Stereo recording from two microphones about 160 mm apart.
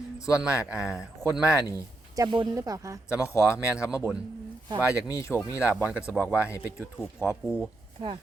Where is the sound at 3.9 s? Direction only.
5° right (ahead or behind).